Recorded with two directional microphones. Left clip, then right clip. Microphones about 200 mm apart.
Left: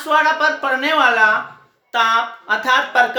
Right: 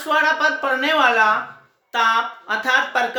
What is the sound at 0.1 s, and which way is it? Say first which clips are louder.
A woman's voice: left 2 dB; 5° right (ahead or behind).